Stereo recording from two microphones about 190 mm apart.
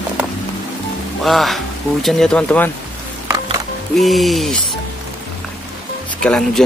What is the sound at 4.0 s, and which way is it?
Speech, centre (ahead or behind).